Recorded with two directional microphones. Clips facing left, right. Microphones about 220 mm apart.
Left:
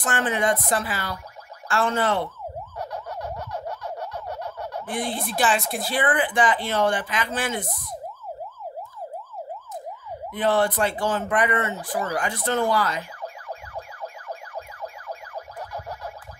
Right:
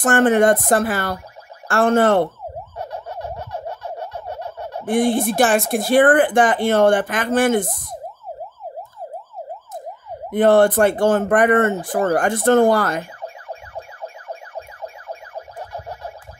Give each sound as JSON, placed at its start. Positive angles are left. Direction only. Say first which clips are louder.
{"t": 0.0, "sound": "speech", "louder": "right 10 dB", "side_deg": -50}
{"t": 2.8, "sound": "turkey", "louder": "right 3 dB", "side_deg": -25}
{"t": 4.8, "sound": "speech", "louder": "right 13 dB", "side_deg": -50}
{"t": 10.3, "sound": "speech", "louder": "right 9 dB", "side_deg": -50}
{"t": 13.2, "sound": "music", "louder": "right 2 dB", "side_deg": -25}